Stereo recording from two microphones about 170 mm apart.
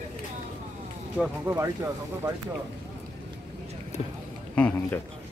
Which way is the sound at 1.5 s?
10° right (ahead or behind).